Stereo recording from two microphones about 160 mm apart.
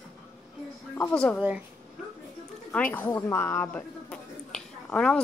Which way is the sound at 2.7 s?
10° left (ahead or behind).